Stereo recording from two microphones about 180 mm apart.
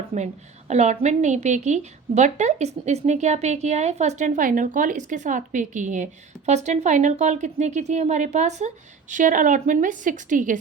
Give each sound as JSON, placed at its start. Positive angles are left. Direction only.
{"t": 0.7, "sound": "a woman's voice", "side_deg": -40}